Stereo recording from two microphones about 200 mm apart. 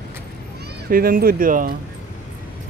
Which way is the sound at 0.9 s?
45° right (ahead or behind).